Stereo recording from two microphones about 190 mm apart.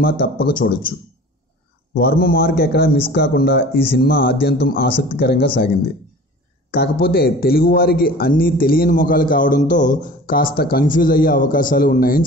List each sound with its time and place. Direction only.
0.0 s a man's voice: 50° left (ahead or behind)
2.0 s speech: 55° left (ahead or behind)
6.7 s a man's voice: 55° left (ahead or behind)